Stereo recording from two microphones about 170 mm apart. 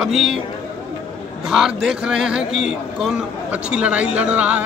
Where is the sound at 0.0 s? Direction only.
Centre (ahead or behind).